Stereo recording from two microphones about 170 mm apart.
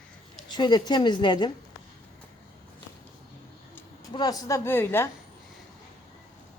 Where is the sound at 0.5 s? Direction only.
25° left (ahead or behind).